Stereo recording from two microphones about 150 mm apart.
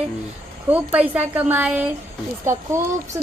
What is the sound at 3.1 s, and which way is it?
Speech, 15° right (ahead or behind).